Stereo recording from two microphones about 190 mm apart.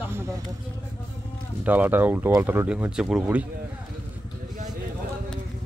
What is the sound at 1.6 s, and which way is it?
Speech, 10° right (ahead or behind).